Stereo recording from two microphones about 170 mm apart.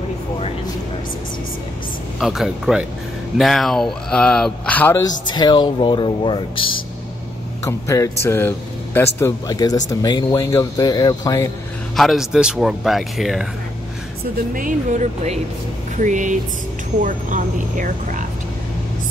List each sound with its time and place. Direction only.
2.1 s speech: centre (ahead or behind)
5.2 s speech: 25° left (ahead or behind)
7.6 s speech: 20° left (ahead or behind)
12.0 s speech: centre (ahead or behind)
14.5 s speech: 50° right (ahead or behind)